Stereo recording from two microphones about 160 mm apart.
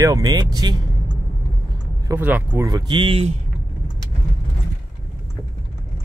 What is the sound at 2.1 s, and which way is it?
Speech, 15° right (ahead or behind).